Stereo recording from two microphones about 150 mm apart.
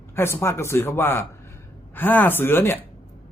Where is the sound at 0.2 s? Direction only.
15° left (ahead or behind).